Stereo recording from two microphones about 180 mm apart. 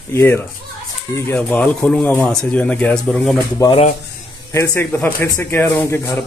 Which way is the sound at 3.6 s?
30° left (ahead or behind).